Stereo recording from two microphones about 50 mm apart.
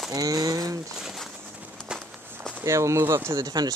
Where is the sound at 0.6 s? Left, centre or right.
Right.